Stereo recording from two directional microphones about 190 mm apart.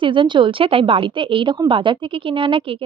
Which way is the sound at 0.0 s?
25° right (ahead or behind).